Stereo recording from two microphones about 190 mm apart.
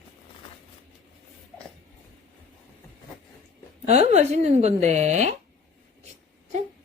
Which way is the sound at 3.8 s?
35° right (ahead or behind).